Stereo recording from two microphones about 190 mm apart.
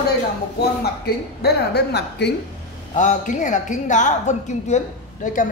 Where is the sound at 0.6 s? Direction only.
55° left (ahead or behind).